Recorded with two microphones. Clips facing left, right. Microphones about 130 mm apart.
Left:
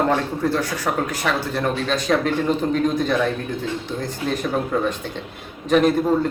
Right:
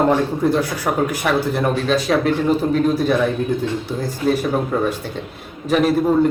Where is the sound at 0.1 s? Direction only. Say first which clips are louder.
Right 4 dB; 10° right (ahead or behind).